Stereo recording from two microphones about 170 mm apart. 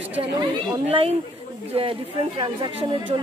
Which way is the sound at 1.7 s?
30° right (ahead or behind).